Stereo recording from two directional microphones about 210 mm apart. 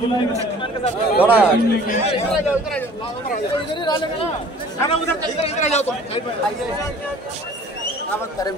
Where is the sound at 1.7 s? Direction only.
40° left (ahead or behind).